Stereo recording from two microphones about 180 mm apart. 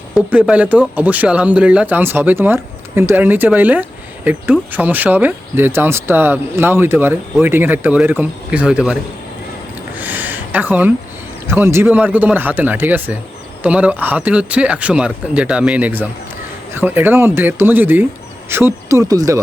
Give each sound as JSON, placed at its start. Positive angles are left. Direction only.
{"t": 0.1, "sound": "speech", "side_deg": -10}
{"t": 10.0, "sound": "a sound", "side_deg": -10}
{"t": 11.4, "sound": "speech", "side_deg": -15}